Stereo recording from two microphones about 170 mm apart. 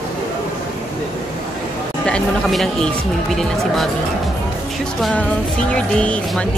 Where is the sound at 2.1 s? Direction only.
5° left (ahead or behind).